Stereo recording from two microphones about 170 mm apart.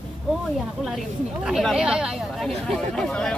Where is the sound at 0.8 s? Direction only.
Centre (ahead or behind).